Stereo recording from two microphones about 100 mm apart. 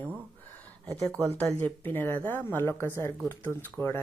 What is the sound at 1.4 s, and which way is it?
Speech, 15° left (ahead or behind).